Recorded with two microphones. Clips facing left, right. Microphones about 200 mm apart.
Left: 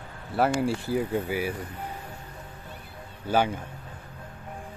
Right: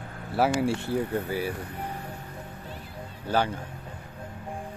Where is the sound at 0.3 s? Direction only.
Centre (ahead or behind).